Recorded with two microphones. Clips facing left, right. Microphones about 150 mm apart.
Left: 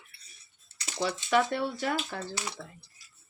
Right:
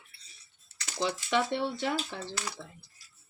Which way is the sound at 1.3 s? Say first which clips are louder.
Left 4 dB; 25° right (ahead or behind).